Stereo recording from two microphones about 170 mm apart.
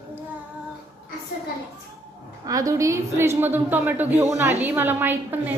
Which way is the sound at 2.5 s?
20° right (ahead or behind).